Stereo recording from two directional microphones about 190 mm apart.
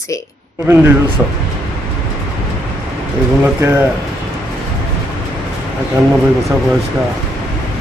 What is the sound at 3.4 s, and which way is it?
Speech, 15° right (ahead or behind).